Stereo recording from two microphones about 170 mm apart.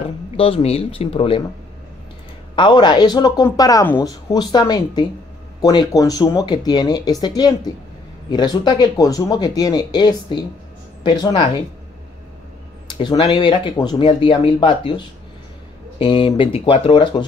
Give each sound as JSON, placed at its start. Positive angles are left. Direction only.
{"t": 0.4, "sound": "speech", "side_deg": 35}
{"t": 2.5, "sound": "speech", "side_deg": 30}
{"t": 12.9, "sound": "speech", "side_deg": 25}
{"t": 16.0, "sound": "speech", "side_deg": 30}